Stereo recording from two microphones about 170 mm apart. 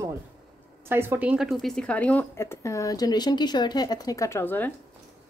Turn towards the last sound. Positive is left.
turn(degrees=10)  # may be behind; listen again after turning